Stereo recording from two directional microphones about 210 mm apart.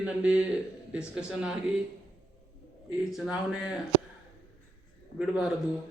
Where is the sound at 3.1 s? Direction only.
Centre (ahead or behind).